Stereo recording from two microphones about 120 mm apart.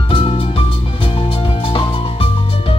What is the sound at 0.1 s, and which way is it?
Music, 50° left (ahead or behind).